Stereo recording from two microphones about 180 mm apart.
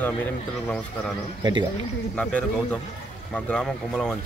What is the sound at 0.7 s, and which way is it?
Speech, centre (ahead or behind).